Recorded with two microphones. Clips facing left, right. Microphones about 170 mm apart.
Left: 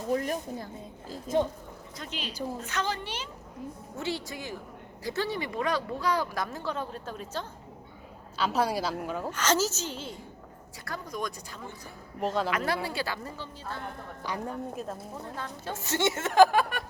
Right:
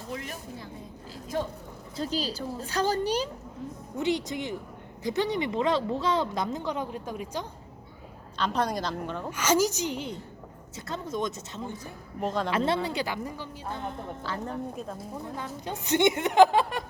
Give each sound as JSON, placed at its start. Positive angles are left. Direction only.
{"t": 0.1, "sound": "a woman's voice", "side_deg": 45}
{"t": 1.3, "sound": "speech", "side_deg": 20}
{"t": 2.0, "sound": "a woman's voice", "side_deg": -35}
{"t": 3.9, "sound": "speech", "side_deg": -20}
{"t": 8.4, "sound": "speech", "side_deg": 5}
{"t": 9.3, "sound": "a woman's voice", "side_deg": -10}
{"t": 12.2, "sound": "speech", "side_deg": 0}
{"t": 12.5, "sound": "speech", "side_deg": -25}
{"t": 14.3, "sound": "speech", "side_deg": 15}
{"t": 15.6, "sound": "a woman's voice", "side_deg": -15}